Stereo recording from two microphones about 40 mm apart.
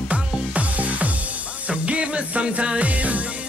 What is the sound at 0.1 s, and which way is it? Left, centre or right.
Music, right.